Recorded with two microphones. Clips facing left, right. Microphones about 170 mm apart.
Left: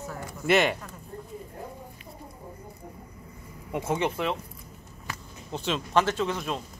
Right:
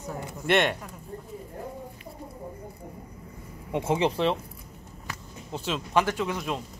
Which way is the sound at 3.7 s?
30° right (ahead or behind).